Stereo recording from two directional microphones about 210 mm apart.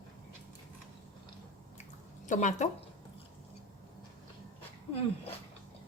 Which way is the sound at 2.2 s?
35° left (ahead or behind).